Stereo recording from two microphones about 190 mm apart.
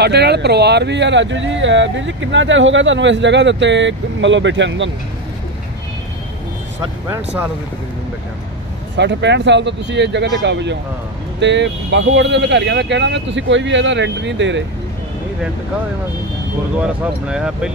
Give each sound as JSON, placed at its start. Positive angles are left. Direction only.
{"t": 0.0, "sound": "speech", "side_deg": -60}
{"t": 8.9, "sound": "speech", "side_deg": -65}
{"t": 16.7, "sound": "speech", "side_deg": -5}